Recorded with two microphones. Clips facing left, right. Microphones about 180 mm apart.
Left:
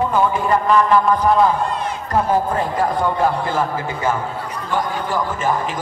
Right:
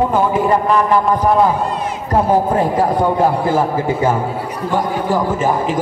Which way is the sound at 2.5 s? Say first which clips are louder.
Right 5 dB; 30° right (ahead or behind).